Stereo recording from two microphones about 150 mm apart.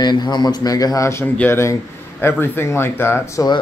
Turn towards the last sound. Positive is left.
turn(degrees=25)  # may be behind; listen again after turning